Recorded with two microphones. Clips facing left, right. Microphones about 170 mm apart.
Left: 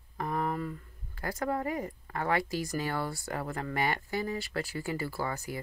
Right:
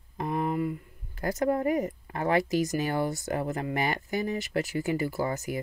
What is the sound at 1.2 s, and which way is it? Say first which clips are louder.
Speech: right 6 dB; 20° right (ahead or behind).